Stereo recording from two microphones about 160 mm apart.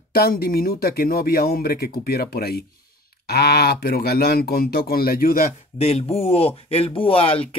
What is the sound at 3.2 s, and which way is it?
Speech, 85° left.